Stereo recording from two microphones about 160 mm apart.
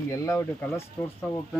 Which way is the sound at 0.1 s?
15° left (ahead or behind).